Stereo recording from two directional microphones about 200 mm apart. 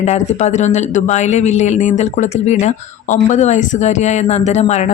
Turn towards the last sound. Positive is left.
turn(degrees=35)  # may be behind; listen again after turning